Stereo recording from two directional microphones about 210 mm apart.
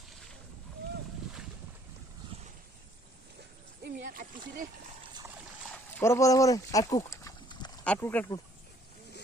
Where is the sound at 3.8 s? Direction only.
45° right (ahead or behind).